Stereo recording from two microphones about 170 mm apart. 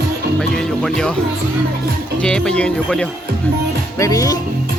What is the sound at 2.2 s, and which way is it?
Speech, 5° left (ahead or behind).